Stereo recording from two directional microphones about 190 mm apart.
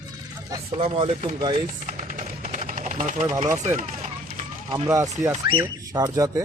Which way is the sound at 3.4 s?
40° right (ahead or behind).